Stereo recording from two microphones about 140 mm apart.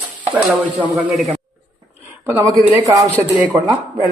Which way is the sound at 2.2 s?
20° right (ahead or behind).